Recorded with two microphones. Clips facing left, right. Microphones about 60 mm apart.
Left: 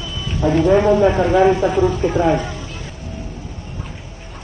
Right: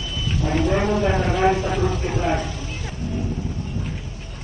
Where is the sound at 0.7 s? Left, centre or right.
Left.